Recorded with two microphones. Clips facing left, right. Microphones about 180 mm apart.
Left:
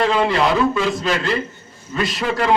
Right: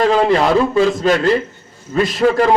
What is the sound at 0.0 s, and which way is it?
A man's voice, 40° right (ahead or behind).